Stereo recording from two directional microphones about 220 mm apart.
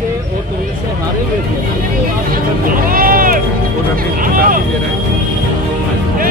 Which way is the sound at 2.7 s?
40° right (ahead or behind).